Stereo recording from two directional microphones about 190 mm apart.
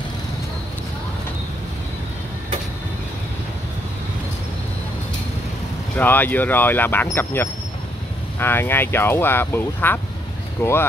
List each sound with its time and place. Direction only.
5.9 s speech: 10° left (ahead or behind)